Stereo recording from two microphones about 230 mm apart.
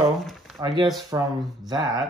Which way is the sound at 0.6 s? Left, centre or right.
Centre.